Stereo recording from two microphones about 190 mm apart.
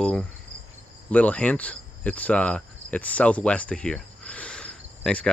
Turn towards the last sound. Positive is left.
turn(degrees=5)  # may be behind; listen again after turning